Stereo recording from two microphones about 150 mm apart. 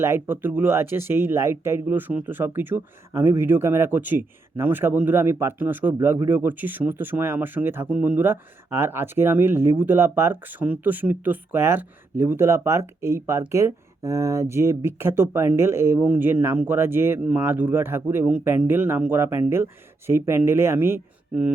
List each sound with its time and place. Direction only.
0.0 s speech: 15° right (ahead or behind)